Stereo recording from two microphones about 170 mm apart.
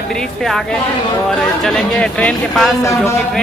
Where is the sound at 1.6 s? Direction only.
5° left (ahead or behind).